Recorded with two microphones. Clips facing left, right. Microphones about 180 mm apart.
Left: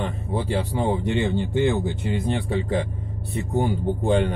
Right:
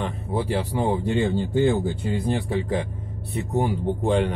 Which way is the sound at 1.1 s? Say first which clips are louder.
Right 1 dB; 20° left (ahead or behind).